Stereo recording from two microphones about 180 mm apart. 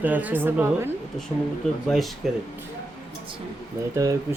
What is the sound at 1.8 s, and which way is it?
Speech, centre (ahead or behind).